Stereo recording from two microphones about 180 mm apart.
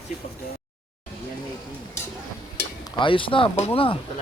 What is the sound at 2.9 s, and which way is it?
Speech, 30° left (ahead or behind).